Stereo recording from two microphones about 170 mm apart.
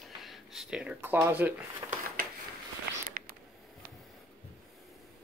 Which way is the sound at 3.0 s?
55° right (ahead or behind).